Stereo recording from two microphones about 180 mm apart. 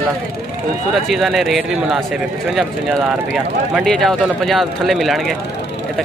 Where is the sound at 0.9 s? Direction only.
Centre (ahead or behind).